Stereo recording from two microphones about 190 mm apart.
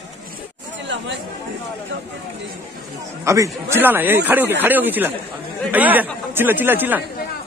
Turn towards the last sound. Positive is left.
turn(degrees=-10)  # may be behind; listen again after turning